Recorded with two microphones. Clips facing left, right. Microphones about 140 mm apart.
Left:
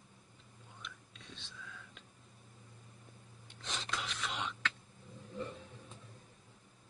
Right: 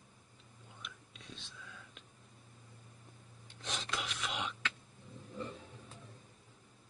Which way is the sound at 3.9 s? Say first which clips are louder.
Even; 10° right (ahead or behind).